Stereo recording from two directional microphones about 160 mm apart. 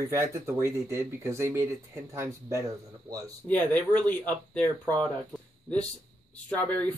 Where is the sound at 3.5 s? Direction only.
10° left (ahead or behind).